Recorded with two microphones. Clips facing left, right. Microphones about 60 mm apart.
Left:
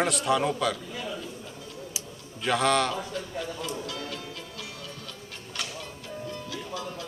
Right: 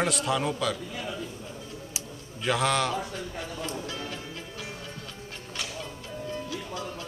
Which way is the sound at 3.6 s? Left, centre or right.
Right.